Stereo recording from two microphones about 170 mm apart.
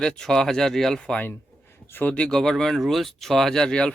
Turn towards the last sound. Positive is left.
turn(degrees=5)  # may be behind; listen again after turning